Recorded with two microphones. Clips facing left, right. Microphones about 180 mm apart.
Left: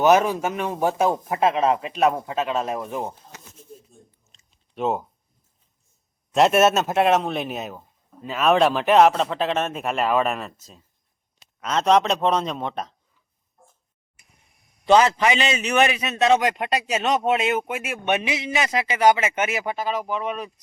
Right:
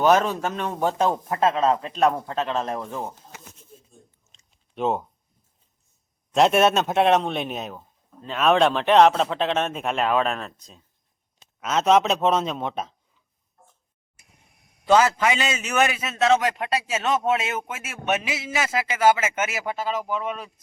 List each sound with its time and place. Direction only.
0.0 s speech: 10° left (ahead or behind)
4.3 s chewing: centre (ahead or behind)
6.3 s speech: centre (ahead or behind)
14.9 s speech: 15° left (ahead or behind)